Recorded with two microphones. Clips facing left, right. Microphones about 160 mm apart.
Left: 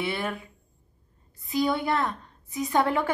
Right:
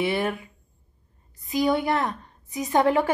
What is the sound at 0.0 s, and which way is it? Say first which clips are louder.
Speech: right 5 dB; 15° right (ahead or behind).